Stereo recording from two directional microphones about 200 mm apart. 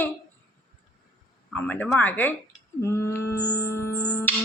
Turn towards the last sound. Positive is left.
turn(degrees=10)  # may be behind; listen again after turning